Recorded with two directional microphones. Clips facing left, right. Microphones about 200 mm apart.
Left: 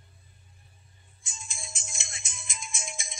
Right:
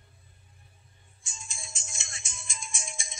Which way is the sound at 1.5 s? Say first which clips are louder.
Left 3 dB; 25° right (ahead or behind).